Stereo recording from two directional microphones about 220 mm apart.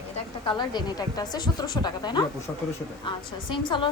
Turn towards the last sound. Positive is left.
turn(degrees=20)  # may be behind; listen again after turning